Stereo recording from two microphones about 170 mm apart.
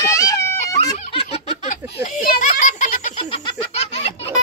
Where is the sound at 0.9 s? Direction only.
40° left (ahead or behind).